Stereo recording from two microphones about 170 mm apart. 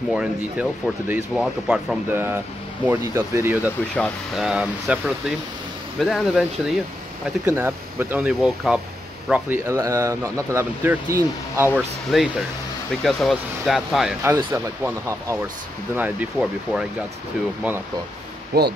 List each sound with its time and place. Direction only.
0.1 s speech: 5° right (ahead or behind)
2.1 s speech: 15° right (ahead or behind)
3.9 s speech: 5° left (ahead or behind)
4.5 s speech: 5° right (ahead or behind)
7.4 s speech: 10° right (ahead or behind)
9.3 s speech: 15° right (ahead or behind)
12.1 s speech: centre (ahead or behind)
14.2 s speech: 15° right (ahead or behind)
18.5 s speech: 65° right (ahead or behind)